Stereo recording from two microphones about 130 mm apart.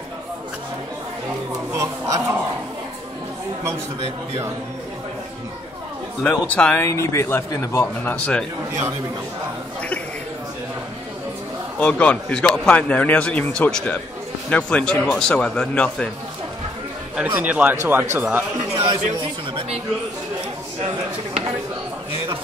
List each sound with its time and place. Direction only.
1.7 s a sound: 25° right (ahead or behind)
6.2 s speech: 10° left (ahead or behind)
11.8 s speech: 10° left (ahead or behind)
17.3 s speech: 10° right (ahead or behind)